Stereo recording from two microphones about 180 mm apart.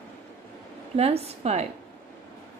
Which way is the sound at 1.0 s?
35° right (ahead or behind).